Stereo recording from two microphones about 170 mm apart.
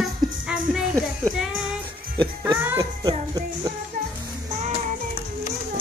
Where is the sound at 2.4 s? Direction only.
15° right (ahead or behind).